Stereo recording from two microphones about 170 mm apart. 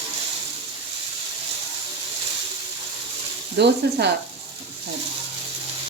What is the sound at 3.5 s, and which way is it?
Speech, 80° right.